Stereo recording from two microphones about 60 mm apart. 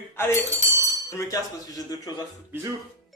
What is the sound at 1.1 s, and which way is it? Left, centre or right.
Speech, left.